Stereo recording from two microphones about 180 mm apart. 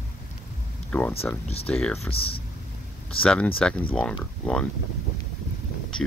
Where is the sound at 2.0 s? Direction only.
30° left (ahead or behind).